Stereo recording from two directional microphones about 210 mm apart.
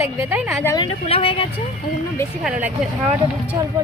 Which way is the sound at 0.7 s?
25° left (ahead or behind).